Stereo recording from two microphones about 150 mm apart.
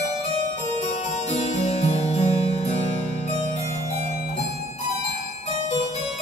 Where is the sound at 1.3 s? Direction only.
50° left (ahead or behind).